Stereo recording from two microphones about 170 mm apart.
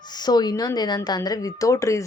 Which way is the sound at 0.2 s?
25° left (ahead or behind).